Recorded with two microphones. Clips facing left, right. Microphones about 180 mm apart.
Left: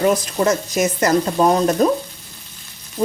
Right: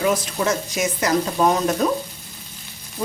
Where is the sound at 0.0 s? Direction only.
45° left (ahead or behind).